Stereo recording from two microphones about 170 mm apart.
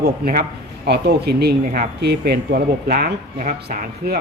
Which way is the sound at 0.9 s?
70° right (ahead or behind).